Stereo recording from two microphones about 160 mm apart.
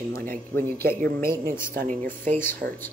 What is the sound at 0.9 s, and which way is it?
A woman's voice, 65° right (ahead or behind).